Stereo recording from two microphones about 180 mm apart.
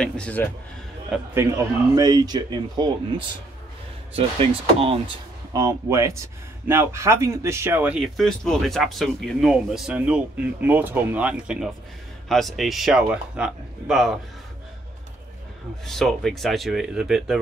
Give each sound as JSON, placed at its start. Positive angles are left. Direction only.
{"t": 0.0, "sound": "speech", "side_deg": 5}
{"t": 1.1, "sound": "speech", "side_deg": -15}
{"t": 4.7, "sound": "speech", "side_deg": -30}
{"t": 5.5, "sound": "speech", "side_deg": -20}
{"t": 15.8, "sound": "speech", "side_deg": 0}